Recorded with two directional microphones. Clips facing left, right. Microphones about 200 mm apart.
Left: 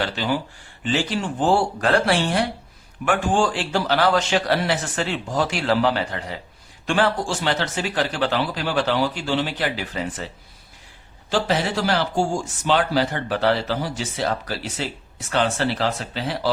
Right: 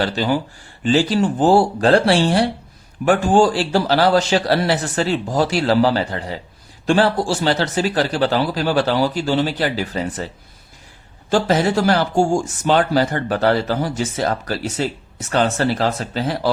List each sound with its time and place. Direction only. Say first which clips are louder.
0.9 s speech: right 7 dB; 35° right (ahead or behind)
11.3 s speech: right 5 dB; 45° right (ahead or behind)